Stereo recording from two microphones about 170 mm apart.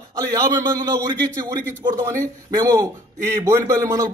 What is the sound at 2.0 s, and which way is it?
A man's voice, 15° right (ahead or behind).